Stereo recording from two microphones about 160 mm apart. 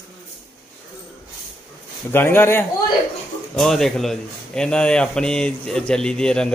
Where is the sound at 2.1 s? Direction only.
15° left (ahead or behind).